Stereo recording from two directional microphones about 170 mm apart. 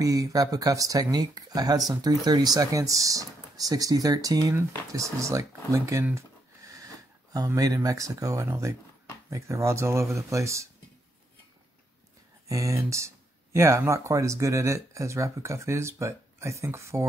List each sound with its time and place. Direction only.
0.0 s speech: 20° right (ahead or behind)
12.4 s speech: 20° right (ahead or behind)